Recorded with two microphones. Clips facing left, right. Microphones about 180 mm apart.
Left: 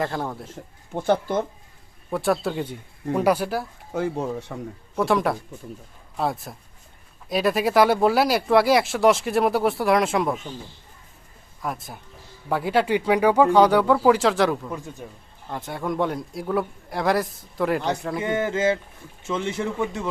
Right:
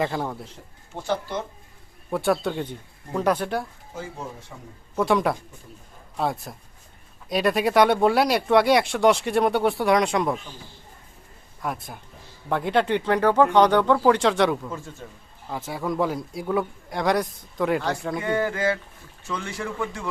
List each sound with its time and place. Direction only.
0.0 s speech: centre (ahead or behind)
0.9 s speech: 55° left (ahead or behind)
2.0 s speech: centre (ahead or behind)
3.9 s speech: 65° left (ahead or behind)
4.9 s speech: centre (ahead or behind)
11.6 s speech: centre (ahead or behind)
14.7 s a man's voice: 15° left (ahead or behind)
15.4 s speech: centre (ahead or behind)
18.2 s speech: 20° left (ahead or behind)